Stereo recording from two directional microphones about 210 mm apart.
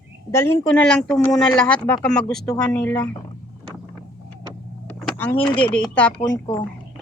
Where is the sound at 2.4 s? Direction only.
15° left (ahead or behind).